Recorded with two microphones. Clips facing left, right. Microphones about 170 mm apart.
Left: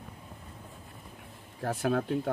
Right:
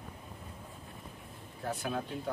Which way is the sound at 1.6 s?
55° left (ahead or behind).